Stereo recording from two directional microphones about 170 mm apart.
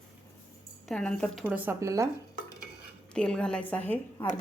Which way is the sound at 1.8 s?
20° right (ahead or behind).